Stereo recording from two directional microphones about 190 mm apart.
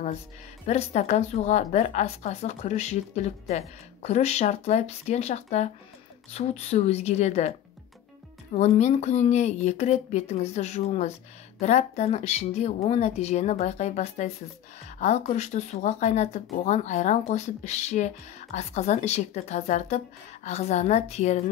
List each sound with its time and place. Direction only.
0.7 s a woman's voice: 35° left (ahead or behind)
8.5 s a woman's voice: 35° left (ahead or behind)